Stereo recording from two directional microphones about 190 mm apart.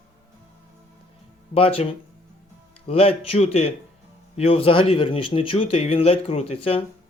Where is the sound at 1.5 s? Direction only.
30° left (ahead or behind).